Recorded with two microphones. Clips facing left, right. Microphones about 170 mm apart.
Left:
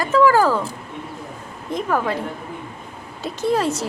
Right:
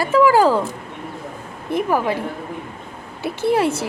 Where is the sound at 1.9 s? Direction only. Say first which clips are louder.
Right 1 dB; 10° right (ahead or behind).